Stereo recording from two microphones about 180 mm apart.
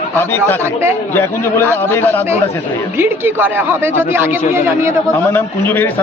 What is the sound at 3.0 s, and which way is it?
Speech, 10° right (ahead or behind).